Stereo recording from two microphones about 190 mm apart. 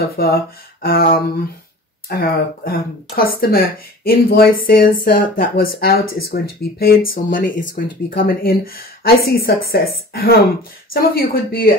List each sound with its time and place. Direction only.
0.2 s speech: 55° left (ahead or behind)